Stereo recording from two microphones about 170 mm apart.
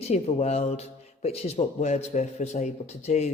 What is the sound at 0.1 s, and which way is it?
A woman's voice, 40° left (ahead or behind).